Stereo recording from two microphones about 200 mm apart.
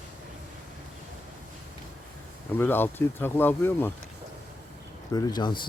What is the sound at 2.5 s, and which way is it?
A man's voice, 10° left (ahead or behind).